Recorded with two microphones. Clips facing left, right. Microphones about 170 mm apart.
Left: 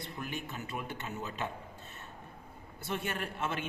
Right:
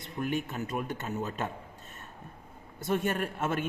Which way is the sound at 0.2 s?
50° right (ahead or behind).